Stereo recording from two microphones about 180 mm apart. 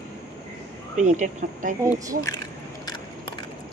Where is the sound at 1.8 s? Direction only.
15° right (ahead or behind).